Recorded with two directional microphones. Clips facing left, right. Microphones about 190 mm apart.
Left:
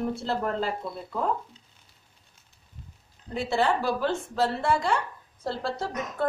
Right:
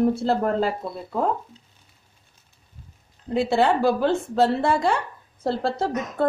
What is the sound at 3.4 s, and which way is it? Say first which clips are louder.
A woman's voice: right 5 dB; 30° right (ahead or behind).